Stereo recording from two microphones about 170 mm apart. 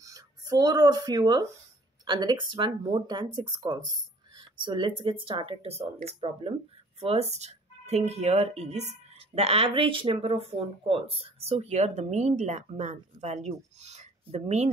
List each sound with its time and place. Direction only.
0.0 s speech: 20° right (ahead or behind); by 14.7 s 40° right (ahead or behind)